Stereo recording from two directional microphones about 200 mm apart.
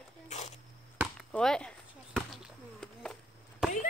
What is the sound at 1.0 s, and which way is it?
Chop, 10° right (ahead or behind).